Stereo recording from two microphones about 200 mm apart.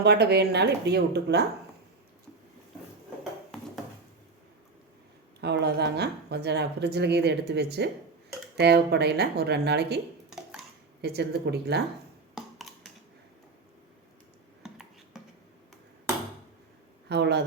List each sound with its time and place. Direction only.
0.0 s speech: 55° right (ahead or behind)
5.4 s speech: 55° right (ahead or behind)
10.2 s a sound: 5° right (ahead or behind)
11.0 s speech: 55° right (ahead or behind)
12.3 s a sound: centre (ahead or behind)
14.6 s finger snapping: centre (ahead or behind)
17.1 s speech: 55° right (ahead or behind)